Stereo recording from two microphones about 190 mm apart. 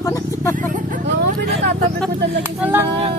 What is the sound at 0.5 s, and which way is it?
Speech, 45° right (ahead or behind).